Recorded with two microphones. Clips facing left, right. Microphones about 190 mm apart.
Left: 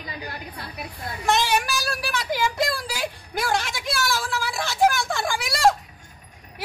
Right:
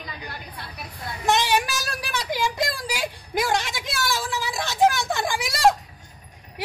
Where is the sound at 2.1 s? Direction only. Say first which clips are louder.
Even; 15° right (ahead or behind).